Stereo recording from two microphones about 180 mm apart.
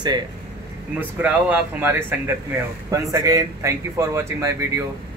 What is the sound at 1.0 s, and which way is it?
Speech, 10° right (ahead or behind).